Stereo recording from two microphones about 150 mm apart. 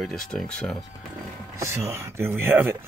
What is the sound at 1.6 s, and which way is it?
Speech, 20° right (ahead or behind).